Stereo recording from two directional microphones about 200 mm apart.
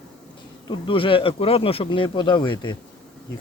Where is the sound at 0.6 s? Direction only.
25° left (ahead or behind).